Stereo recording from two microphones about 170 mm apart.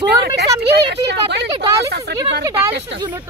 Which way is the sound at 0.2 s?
75° right (ahead or behind).